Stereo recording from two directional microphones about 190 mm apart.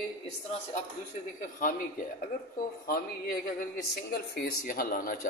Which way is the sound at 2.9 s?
50° left (ahead or behind).